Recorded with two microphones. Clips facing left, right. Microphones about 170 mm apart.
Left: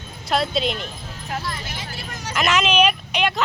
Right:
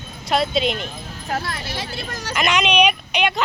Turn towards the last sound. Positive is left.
turn(degrees=0)  # may be behind; listen again after turning